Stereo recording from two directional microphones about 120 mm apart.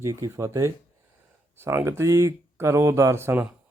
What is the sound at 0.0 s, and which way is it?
Speech, 25° right (ahead or behind).